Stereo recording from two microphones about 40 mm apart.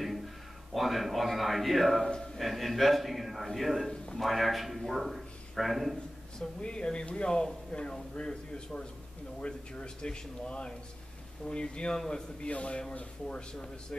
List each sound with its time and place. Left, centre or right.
0.7 s a man's voice: centre
3.9 s a sound: centre
4.2 s a man's voice: centre
6.6 s speech: left